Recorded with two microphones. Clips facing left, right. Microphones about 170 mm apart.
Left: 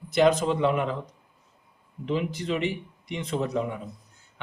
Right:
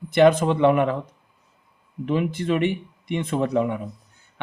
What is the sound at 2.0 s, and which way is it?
Speech, 55° right (ahead or behind).